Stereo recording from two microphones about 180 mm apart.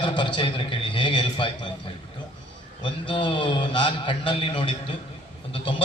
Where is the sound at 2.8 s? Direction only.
25° left (ahead or behind).